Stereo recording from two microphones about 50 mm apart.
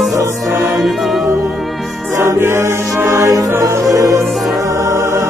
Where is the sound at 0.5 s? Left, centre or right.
Right.